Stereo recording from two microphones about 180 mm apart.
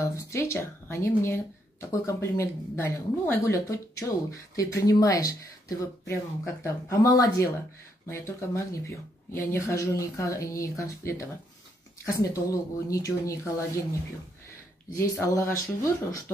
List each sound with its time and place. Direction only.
0.0 s speech: 15° left (ahead or behind)
15.0 s speech: 15° left (ahead or behind)